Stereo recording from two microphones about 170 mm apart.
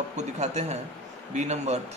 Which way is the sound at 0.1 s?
40° right (ahead or behind).